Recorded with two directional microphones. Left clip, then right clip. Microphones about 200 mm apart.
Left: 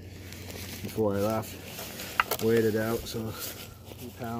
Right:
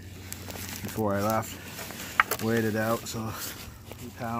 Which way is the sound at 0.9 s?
30° right (ahead or behind).